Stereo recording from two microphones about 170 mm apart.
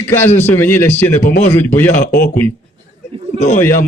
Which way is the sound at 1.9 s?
60° left (ahead or behind).